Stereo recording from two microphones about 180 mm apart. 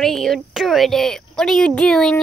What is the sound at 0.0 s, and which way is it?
Speech, centre (ahead or behind).